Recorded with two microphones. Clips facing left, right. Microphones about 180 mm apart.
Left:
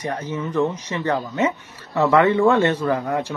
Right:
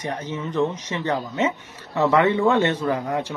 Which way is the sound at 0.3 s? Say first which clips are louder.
Left 2 dB; 20° right (ahead or behind).